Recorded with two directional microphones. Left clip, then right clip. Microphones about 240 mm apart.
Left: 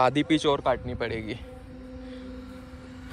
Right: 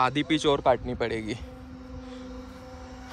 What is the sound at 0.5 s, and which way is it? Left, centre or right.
Speech, right.